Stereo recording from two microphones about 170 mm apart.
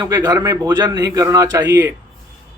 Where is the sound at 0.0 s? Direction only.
20° right (ahead or behind).